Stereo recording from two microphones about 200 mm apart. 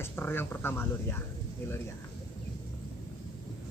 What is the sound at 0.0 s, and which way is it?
Speech, 10° left (ahead or behind).